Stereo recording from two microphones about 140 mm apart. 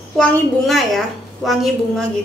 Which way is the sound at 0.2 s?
Centre (ahead or behind).